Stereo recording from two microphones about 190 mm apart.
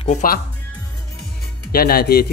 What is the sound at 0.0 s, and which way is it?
Speech, 40° left (ahead or behind).